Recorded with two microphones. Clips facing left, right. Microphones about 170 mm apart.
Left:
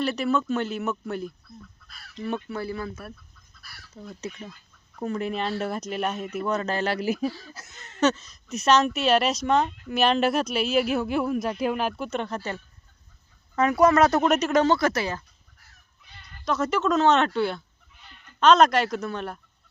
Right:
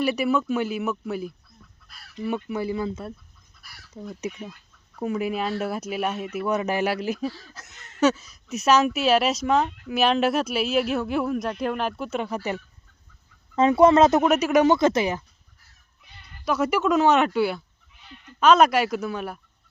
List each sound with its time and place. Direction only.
0.0 s speech: 10° right (ahead or behind)
7.0 s speech: 5° left (ahead or behind)
8.0 s speech: 10° right (ahead or behind)
13.6 s speech: 25° right (ahead or behind)
14.2 s speech: 10° right (ahead or behind)
16.5 s speech: 10° right (ahead or behind)